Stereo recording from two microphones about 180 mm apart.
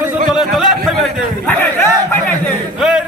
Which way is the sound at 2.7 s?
Centre (ahead or behind).